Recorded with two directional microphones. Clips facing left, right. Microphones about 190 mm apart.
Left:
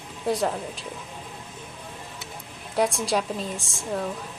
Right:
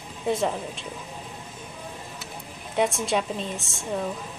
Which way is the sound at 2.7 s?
Centre (ahead or behind).